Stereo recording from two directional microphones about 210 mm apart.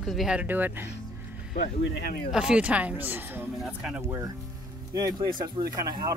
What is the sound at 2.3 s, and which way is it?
Speech, 5° right (ahead or behind).